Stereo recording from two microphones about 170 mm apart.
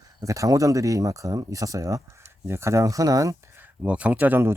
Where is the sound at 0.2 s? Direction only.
20° right (ahead or behind).